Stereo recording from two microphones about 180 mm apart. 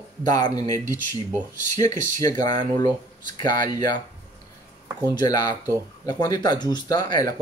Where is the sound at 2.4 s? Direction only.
25° left (ahead or behind).